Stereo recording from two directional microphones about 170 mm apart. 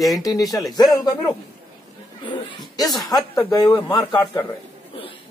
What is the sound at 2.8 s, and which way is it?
Speech, 20° left (ahead or behind).